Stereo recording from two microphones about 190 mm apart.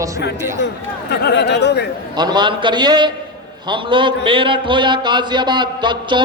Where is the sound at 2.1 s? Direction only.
20° right (ahead or behind).